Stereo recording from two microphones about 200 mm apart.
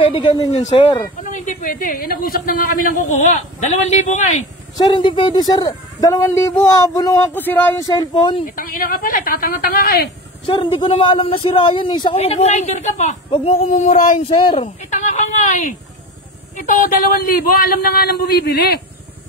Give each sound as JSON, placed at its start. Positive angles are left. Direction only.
{"t": 0.0, "sound": "speech", "side_deg": 25}
{"t": 0.5, "sound": "speech", "side_deg": 35}
{"t": 1.3, "sound": "speech", "side_deg": 40}
{"t": 4.7, "sound": "speech", "side_deg": 20}
{"t": 8.5, "sound": "speech", "side_deg": 45}
{"t": 10.4, "sound": "speech", "side_deg": 25}
{"t": 14.3, "sound": "speech", "side_deg": 25}